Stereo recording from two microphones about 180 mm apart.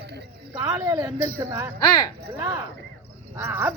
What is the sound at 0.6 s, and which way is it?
Speech, 20° right (ahead or behind).